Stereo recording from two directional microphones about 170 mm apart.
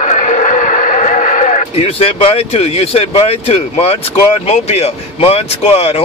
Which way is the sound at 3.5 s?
35° left (ahead or behind).